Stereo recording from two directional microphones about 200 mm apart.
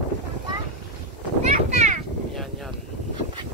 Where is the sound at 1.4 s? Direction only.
35° right (ahead or behind).